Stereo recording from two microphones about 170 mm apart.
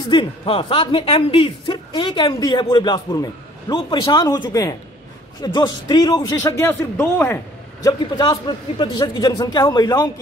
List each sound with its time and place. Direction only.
0.0 s speech: 30° left (ahead or behind)
7.0 s a man's voice: 10° left (ahead or behind)
8.2 s speech: 25° left (ahead or behind)